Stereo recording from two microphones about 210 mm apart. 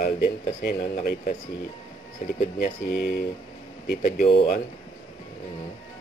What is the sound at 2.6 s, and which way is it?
Speech, 50° left (ahead or behind).